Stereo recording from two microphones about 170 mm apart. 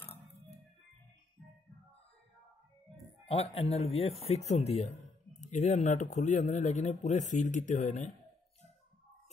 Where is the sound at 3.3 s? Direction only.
35° left (ahead or behind).